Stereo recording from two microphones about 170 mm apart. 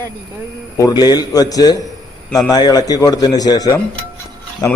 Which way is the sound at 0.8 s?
25° left (ahead or behind).